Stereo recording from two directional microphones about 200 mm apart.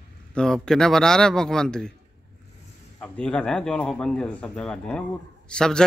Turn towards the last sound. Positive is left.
turn(degrees=5)  # may be behind; listen again after turning